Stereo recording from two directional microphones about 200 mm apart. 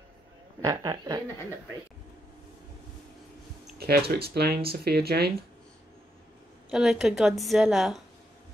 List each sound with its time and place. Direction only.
0.6 s speech: 15° right (ahead or behind)
4.1 s speech: 50° right (ahead or behind)
6.7 s a woman's voice: 5° right (ahead or behind)